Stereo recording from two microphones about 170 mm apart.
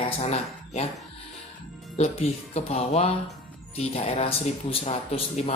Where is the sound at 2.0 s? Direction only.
35° left (ahead or behind).